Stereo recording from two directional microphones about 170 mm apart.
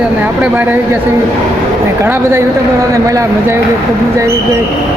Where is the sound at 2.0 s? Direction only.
15° right (ahead or behind).